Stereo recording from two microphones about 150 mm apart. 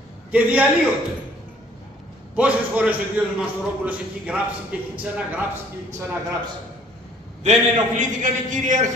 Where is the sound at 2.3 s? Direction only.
5° right (ahead or behind).